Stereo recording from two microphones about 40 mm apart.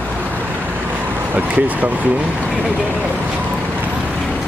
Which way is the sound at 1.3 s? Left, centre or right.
Right.